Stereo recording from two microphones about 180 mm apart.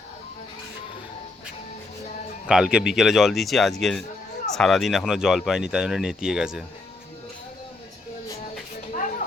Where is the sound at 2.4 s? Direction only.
5° right (ahead or behind).